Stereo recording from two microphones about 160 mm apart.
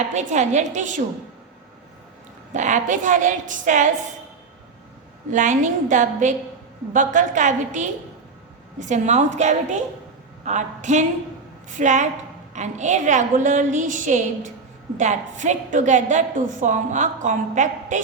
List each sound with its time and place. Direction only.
0.1 s a woman's voice: 50° right (ahead or behind)
2.5 s a woman's voice: 50° right (ahead or behind)
5.3 s a woman's voice: 50° right (ahead or behind)